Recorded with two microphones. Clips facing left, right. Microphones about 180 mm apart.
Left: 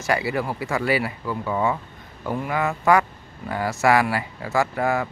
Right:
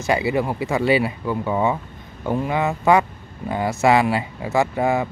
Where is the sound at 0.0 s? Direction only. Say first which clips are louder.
Right 3 dB; 20° right (ahead or behind).